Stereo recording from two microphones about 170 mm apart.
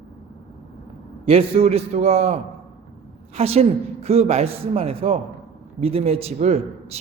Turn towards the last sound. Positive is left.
turn(degrees=-40)  # may be behind; listen again after turning